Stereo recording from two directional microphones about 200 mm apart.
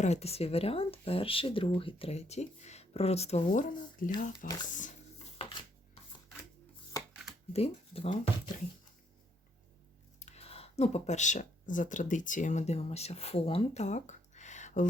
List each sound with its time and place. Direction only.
0.0 s speech: 30° left (ahead or behind)
7.5 s speech: 30° left (ahead or behind)
10.2 s speech: 35° left (ahead or behind)